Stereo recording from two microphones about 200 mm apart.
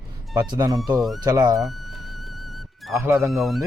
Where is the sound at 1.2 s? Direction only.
20° right (ahead or behind).